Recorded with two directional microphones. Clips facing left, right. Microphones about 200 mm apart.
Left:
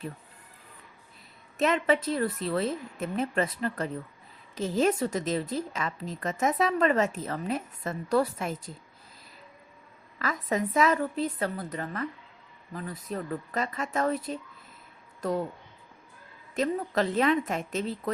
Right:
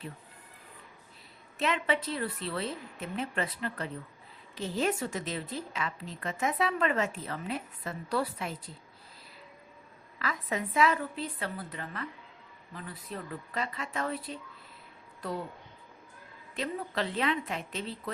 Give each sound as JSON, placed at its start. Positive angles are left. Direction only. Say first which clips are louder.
{"t": 1.5, "sound": "a woman's voice", "louder": "left 5 dB", "side_deg": 45}
{"t": 10.2, "sound": "a woman's voice", "louder": "left 5 dB", "side_deg": 45}
{"t": 16.6, "sound": "a woman's voice", "louder": "left 6 dB", "side_deg": 45}